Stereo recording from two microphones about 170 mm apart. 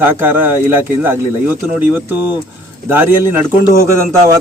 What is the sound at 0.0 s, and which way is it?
Speech, 15° right (ahead or behind).